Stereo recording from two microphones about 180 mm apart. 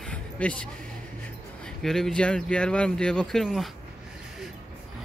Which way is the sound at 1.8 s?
Centre (ahead or behind).